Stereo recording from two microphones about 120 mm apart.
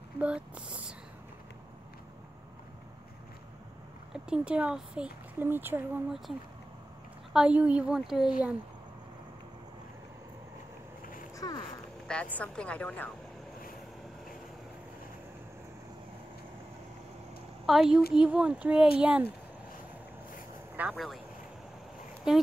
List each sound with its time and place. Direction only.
0.2 s speech: 10° right (ahead or behind)
4.1 s speech: 10° right (ahead or behind)
6.0 s speech: centre (ahead or behind)
7.3 s speech: 10° right (ahead or behind)
11.3 s a sound: 30° left (ahead or behind)
12.1 s a woman's voice: 10° left (ahead or behind)
17.6 s speech: 5° right (ahead or behind)
20.7 s speech: 15° right (ahead or behind)